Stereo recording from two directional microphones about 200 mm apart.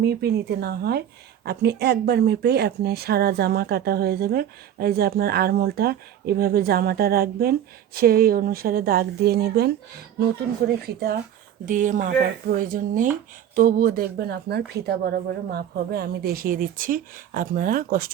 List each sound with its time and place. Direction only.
0.0 s speech: 55° right (ahead or behind)
11.6 s speech: 40° right (ahead or behind)